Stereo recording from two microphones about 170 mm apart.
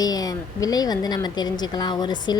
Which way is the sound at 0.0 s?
20° left (ahead or behind).